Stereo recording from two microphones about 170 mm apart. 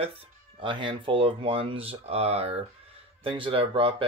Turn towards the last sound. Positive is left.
turn(degrees=-30)  # may be behind; listen again after turning